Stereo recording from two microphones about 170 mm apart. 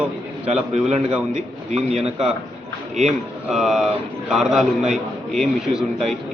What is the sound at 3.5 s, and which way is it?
Speech, centre (ahead or behind).